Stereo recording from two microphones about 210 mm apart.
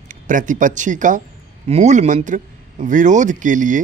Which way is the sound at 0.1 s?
40° right (ahead or behind).